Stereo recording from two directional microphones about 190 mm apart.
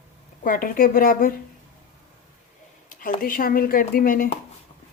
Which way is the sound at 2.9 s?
45° left (ahead or behind).